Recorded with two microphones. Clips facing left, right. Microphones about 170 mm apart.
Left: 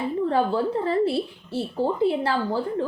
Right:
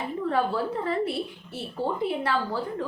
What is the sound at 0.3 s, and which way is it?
A woman's voice, 30° left (ahead or behind).